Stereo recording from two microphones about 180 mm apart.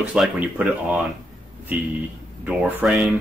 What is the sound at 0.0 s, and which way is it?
Speech, 5° right (ahead or behind).